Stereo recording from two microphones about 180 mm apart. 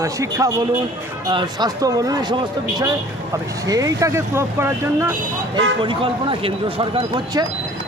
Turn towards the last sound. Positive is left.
turn(degrees=-30)  # may be behind; listen again after turning